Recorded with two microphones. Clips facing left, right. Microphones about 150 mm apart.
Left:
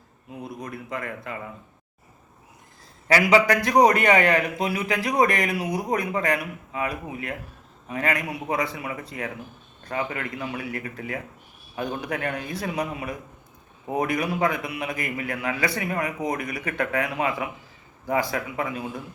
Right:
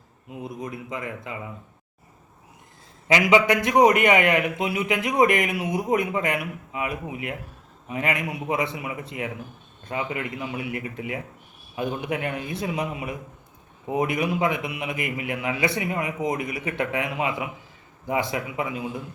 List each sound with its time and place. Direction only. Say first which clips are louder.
0.4 s a man's voice: right 2 dB; 20° right (ahead or behind)
3.3 s a man's voice: even; 20° right (ahead or behind)
3.9 s a man's voice: even; 35° left (ahead or behind)
4.6 s a man's voice: right 1 dB; 20° right (ahead or behind)
5.3 s a man's voice: right 2 dB; 35° left (ahead or behind)
5.5 s a man's voice: right 2 dB; 20° right (ahead or behind)